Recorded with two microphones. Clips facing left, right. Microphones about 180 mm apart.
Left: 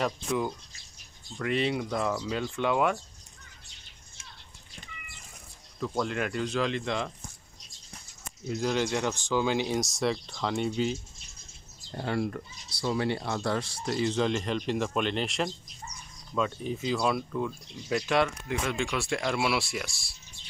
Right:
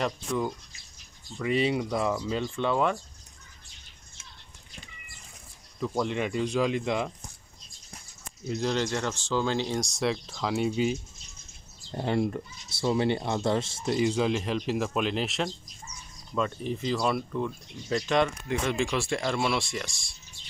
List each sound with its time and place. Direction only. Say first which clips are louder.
0.0 s speech: even; centre (ahead or behind)
5.8 s speech: right 2 dB; centre (ahead or behind)
8.5 s speech: even; 5° left (ahead or behind)
11.9 s speech: right 3 dB; 25° right (ahead or behind); by 20.2 s 5° left (ahead or behind)